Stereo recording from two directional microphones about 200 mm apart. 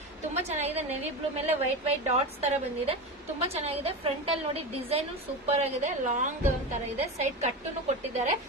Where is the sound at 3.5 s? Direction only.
30° right (ahead or behind).